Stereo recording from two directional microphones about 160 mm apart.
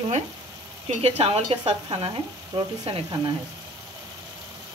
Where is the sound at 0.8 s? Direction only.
40° right (ahead or behind).